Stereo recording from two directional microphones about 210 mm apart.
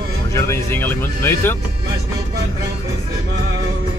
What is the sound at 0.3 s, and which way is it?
Speech, 15° left (ahead or behind).